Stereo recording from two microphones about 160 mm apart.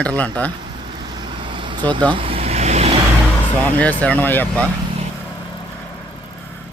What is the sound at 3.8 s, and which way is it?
Speech, 10° left (ahead or behind).